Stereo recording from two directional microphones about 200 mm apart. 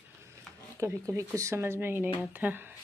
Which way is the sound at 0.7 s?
15° right (ahead or behind).